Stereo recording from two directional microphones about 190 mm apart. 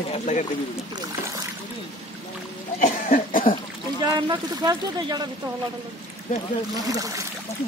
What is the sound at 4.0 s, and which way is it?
Speech, 20° right (ahead or behind).